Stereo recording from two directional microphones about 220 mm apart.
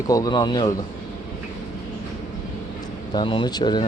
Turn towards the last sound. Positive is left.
turn(degrees=20)  # may be behind; listen again after turning